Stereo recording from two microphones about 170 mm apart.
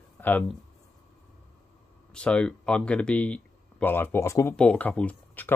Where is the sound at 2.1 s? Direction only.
5° left (ahead or behind).